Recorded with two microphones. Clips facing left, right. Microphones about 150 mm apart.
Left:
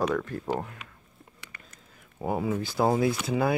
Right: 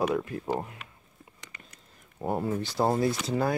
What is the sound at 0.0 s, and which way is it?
Speech, 10° right (ahead or behind).